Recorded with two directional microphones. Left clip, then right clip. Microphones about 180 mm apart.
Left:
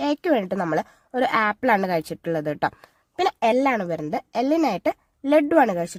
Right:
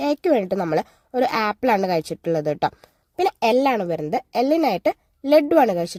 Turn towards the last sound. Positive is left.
turn(degrees=-40)  # may be behind; listen again after turning